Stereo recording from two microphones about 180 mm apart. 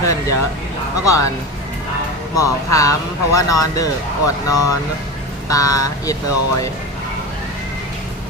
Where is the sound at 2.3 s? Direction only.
20° left (ahead or behind).